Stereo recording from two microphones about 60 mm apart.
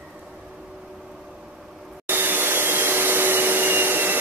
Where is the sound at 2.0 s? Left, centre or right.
Right.